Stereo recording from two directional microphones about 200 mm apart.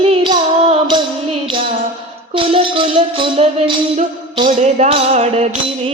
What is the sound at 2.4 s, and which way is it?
Music, 25° right (ahead or behind).